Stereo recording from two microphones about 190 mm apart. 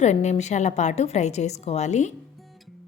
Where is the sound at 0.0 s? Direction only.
35° left (ahead or behind).